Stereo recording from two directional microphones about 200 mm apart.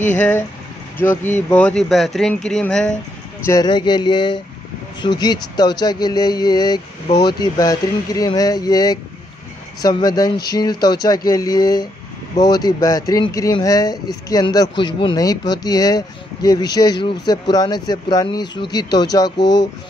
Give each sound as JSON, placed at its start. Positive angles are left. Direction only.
{"t": 0.9, "sound": "speech", "side_deg": 10}
{"t": 3.4, "sound": "speech", "side_deg": 20}